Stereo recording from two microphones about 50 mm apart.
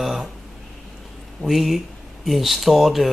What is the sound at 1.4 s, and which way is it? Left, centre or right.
Speech, centre.